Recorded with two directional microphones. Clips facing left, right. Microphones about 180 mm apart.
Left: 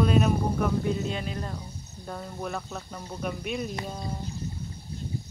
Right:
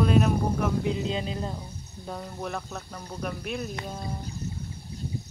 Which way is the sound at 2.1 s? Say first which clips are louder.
Even; 5° right (ahead or behind).